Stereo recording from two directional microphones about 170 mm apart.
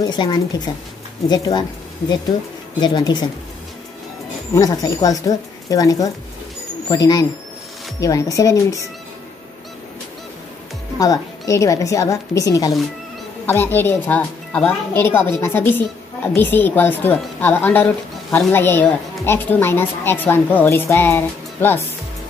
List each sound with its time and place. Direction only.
0.0 s a woman's voice: 25° left (ahead or behind)
4.6 s a woman's voice: 20° left (ahead or behind)
11.0 s a woman's voice: 20° left (ahead or behind)